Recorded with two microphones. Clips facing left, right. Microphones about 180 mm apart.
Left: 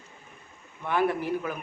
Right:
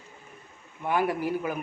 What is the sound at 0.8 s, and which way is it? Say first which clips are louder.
Speech: even; 10° right (ahead or behind).